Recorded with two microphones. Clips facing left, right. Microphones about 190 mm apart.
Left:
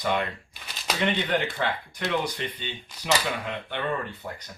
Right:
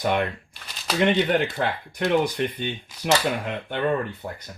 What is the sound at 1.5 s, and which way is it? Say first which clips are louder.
Speech: right 3 dB; 50° right (ahead or behind).